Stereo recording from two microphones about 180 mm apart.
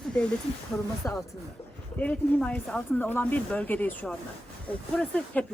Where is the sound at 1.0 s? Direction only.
15° left (ahead or behind).